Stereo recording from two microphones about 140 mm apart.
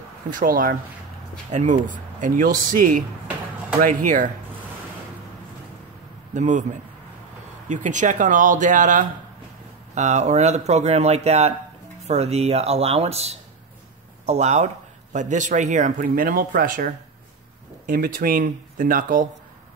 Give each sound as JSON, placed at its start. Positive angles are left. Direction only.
{"t": 0.3, "sound": "a man's voice", "side_deg": -75}
{"t": 1.5, "sound": "a man's voice", "side_deg": -60}
{"t": 3.8, "sound": "a man's voice", "side_deg": -65}
{"t": 6.3, "sound": "speech", "side_deg": -60}
{"t": 7.6, "sound": "speech", "side_deg": -60}